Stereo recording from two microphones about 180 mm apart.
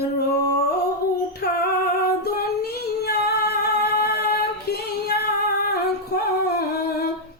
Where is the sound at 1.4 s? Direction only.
65° left (ahead or behind).